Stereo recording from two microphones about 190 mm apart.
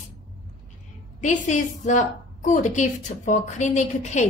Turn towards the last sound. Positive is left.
turn(degrees=40)  # may be behind; listen again after turning